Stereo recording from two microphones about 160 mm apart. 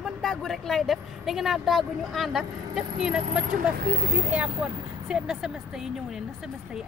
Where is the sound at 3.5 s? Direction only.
65° right (ahead or behind).